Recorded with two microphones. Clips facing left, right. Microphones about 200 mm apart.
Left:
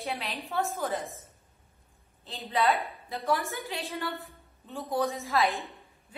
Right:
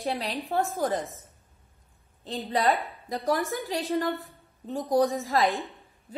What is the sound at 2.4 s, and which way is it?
Speech, 40° right (ahead or behind).